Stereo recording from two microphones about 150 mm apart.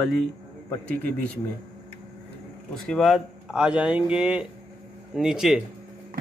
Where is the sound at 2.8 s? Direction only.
Centre (ahead or behind).